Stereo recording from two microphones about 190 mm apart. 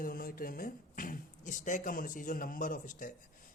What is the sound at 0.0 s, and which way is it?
Speech, 50° left (ahead or behind).